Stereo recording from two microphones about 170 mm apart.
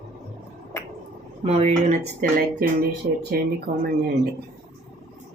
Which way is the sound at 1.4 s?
40° right (ahead or behind).